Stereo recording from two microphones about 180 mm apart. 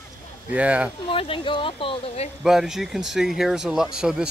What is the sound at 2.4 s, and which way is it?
Speech, centre (ahead or behind).